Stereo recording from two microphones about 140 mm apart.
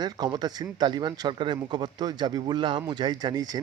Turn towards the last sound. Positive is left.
turn(degrees=-30)  # may be behind; listen again after turning